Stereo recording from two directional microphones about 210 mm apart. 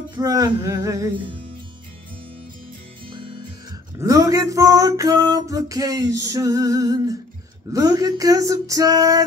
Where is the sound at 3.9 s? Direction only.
15° right (ahead or behind).